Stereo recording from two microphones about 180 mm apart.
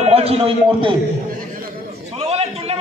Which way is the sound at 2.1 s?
35° right (ahead or behind).